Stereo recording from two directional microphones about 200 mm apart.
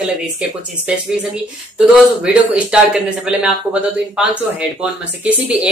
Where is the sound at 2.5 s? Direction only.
5° right (ahead or behind).